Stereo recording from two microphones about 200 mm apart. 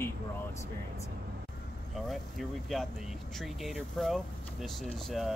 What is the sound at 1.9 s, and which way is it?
Speech, centre (ahead or behind).